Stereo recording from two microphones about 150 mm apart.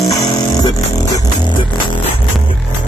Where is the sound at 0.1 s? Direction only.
25° left (ahead or behind).